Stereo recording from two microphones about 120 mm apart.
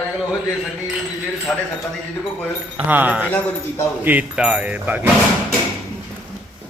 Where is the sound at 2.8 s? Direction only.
15° right (ahead or behind).